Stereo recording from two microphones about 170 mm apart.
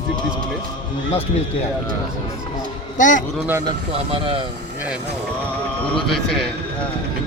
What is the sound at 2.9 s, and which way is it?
Speech, 50° left (ahead or behind).